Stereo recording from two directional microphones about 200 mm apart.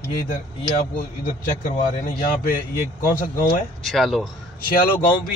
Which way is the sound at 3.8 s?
Centre (ahead or behind).